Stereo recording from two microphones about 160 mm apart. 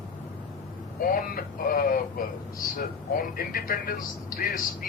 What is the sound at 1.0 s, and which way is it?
A man's voice, 65° left (ahead or behind).